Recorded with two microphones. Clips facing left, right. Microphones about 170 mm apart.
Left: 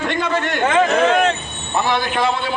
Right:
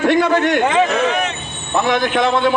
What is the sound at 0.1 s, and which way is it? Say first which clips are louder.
Speech: right 7 dB; 60° right (ahead or behind).